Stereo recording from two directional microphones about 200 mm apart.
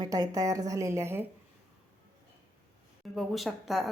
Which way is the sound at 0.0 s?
20° right (ahead or behind).